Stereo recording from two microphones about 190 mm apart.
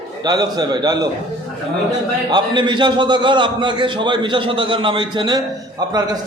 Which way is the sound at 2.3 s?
25° right (ahead or behind).